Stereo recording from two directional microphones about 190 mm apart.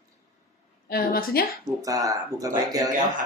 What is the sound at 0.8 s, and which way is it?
Speech, 50° left (ahead or behind).